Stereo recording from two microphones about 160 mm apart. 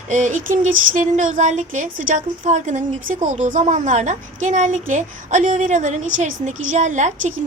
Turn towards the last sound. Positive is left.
turn(degrees=-50)  # may be behind; listen again after turning